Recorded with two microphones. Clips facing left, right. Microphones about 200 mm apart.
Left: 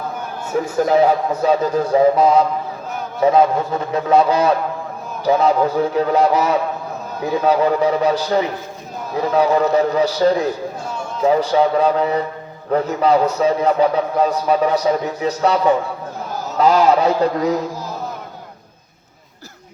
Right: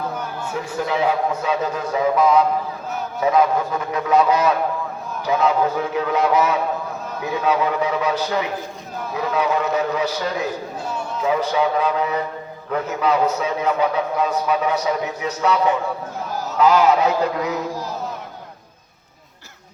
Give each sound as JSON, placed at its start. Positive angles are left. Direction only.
{"t": 0.5, "sound": "a man's voice", "side_deg": 45}